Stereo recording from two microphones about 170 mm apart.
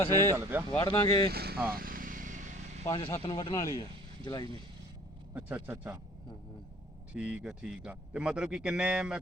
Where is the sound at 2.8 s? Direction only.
25° left (ahead or behind).